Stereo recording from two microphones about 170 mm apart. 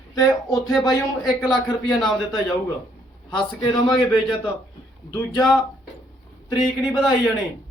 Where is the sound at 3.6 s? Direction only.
25° left (ahead or behind).